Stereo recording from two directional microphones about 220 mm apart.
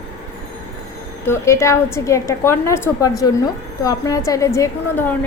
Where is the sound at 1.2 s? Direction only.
10° left (ahead or behind).